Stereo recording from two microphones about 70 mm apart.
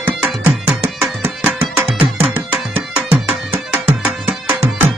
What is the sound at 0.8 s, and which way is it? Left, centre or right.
Music, right.